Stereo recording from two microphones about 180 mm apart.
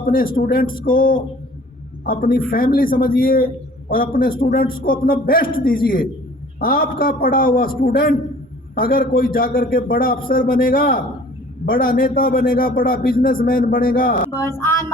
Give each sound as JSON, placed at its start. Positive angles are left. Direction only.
{"t": 0.3, "sound": "a man's voice", "side_deg": 55}